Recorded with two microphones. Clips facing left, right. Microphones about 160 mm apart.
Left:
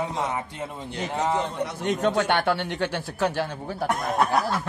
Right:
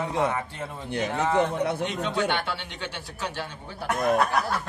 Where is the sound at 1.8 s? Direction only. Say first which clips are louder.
Left 4 dB; 45° left (ahead or behind).